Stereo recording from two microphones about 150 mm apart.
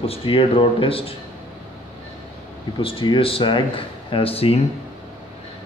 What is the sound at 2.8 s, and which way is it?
A man's voice, 35° left (ahead or behind).